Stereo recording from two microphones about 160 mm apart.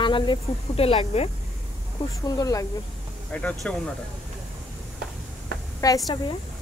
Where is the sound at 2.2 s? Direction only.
25° left (ahead or behind).